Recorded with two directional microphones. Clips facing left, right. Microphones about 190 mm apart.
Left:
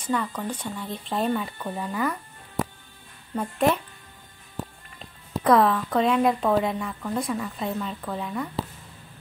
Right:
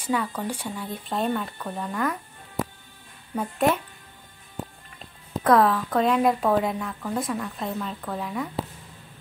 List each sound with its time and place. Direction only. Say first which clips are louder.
0.0 s speech: right 1 dB; 10° right (ahead or behind)
3.3 s speech: even; centre (ahead or behind)
4.9 s speech: left 1 dB; centre (ahead or behind)